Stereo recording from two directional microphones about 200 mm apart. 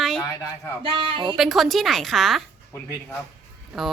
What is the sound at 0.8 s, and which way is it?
Speech, 25° right (ahead or behind).